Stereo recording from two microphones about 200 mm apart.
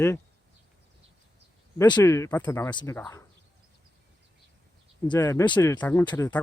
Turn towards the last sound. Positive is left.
turn(degrees=15)  # may be behind; listen again after turning